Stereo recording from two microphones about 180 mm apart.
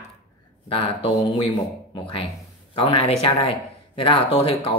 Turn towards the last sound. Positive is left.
turn(degrees=30)  # may be behind; listen again after turning